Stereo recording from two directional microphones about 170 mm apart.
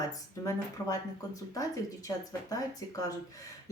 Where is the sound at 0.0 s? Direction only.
20° left (ahead or behind).